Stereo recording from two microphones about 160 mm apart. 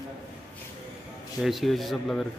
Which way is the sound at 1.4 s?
Centre (ahead or behind).